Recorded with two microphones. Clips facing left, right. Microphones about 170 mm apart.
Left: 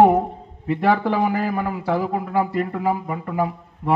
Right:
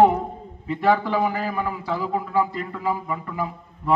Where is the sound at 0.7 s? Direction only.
50° left (ahead or behind).